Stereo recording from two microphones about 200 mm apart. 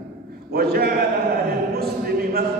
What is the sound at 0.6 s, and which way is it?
Speech, 50° right (ahead or behind).